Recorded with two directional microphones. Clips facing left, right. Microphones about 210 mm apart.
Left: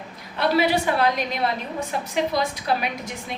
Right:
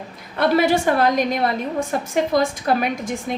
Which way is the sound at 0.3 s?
50° right (ahead or behind).